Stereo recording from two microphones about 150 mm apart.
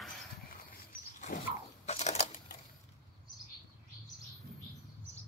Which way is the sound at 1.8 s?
45° left (ahead or behind).